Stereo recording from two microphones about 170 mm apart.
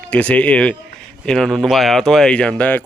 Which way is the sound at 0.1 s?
10° left (ahead or behind).